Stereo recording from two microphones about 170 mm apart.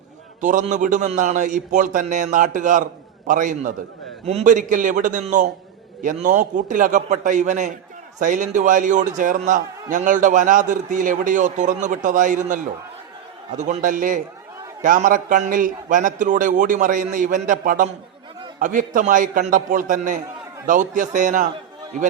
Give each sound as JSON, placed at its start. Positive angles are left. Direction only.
{"t": 0.4, "sound": "a man's voice", "side_deg": -45}
{"t": 13.6, "sound": "a man's voice", "side_deg": -50}